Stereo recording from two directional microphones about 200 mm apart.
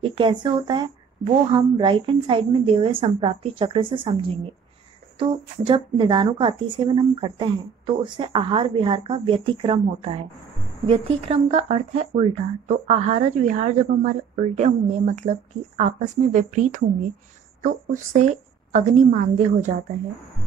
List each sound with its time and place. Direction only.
0.0 s speech: 25° right (ahead or behind)
5.7 s speech: 25° right (ahead or behind)